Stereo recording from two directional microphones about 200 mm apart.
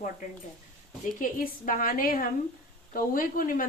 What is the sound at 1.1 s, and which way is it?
A woman's voice, 45° left (ahead or behind).